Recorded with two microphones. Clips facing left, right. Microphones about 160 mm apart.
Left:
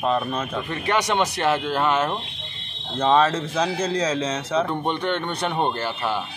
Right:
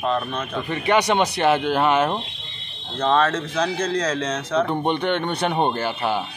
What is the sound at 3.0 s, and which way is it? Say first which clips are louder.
Speech: left 1 dB; 10° left (ahead or behind).